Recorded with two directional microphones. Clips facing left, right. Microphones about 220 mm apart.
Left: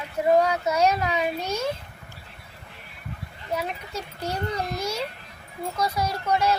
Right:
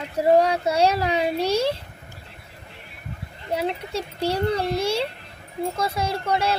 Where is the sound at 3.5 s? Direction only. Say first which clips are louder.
Right 5 dB; 30° right (ahead or behind).